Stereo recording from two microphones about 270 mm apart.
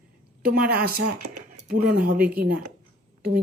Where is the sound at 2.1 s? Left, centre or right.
Centre.